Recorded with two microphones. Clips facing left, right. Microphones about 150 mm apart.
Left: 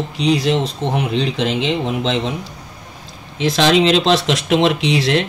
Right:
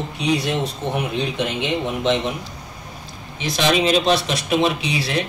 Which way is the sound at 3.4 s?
90° left.